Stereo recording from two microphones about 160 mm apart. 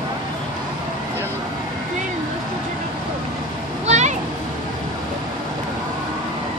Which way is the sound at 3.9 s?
45° right (ahead or behind).